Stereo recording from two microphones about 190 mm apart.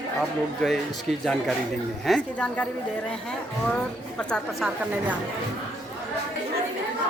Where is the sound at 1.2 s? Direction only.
Centre (ahead or behind).